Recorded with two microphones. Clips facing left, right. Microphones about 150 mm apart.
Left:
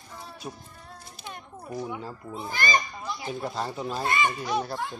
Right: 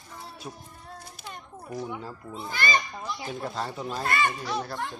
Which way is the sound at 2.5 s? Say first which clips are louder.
Even; 40° left (ahead or behind).